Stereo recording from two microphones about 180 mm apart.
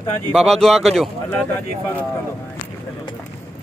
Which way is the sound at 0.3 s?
Centre (ahead or behind).